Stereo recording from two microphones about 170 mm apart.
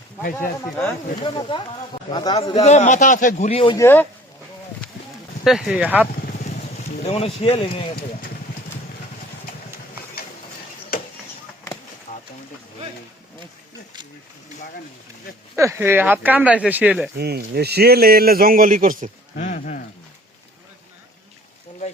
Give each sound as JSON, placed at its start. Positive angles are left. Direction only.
{"t": 0.2, "sound": "speech", "side_deg": 55}
{"t": 1.2, "sound": "speech", "side_deg": 25}
{"t": 2.6, "sound": "a man's voice", "side_deg": 40}
{"t": 3.8, "sound": "speech", "side_deg": 15}
{"t": 5.5, "sound": "speech", "side_deg": -5}
{"t": 7.1, "sound": "speech", "side_deg": 35}
{"t": 15.5, "sound": "speech", "side_deg": -15}
{"t": 17.2, "sound": "a man's voice", "side_deg": -70}
{"t": 19.4, "sound": "a man's voice", "side_deg": 45}